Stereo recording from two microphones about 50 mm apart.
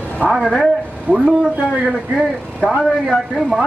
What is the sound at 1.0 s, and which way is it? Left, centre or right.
Speech, right.